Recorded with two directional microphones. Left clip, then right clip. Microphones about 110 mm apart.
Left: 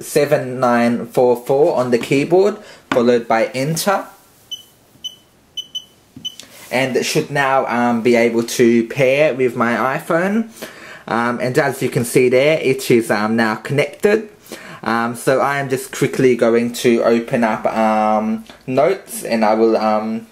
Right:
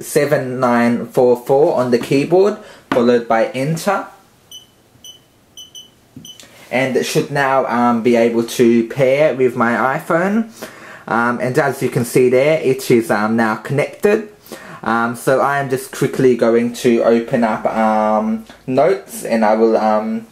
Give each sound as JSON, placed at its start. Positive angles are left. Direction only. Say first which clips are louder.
{"t": 0.1, "sound": "speech", "louder": "even", "side_deg": 10}
{"t": 6.7, "sound": "speech", "louder": "right 1 dB", "side_deg": 30}